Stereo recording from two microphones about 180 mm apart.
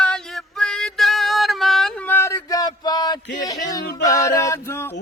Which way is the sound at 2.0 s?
15° left (ahead or behind).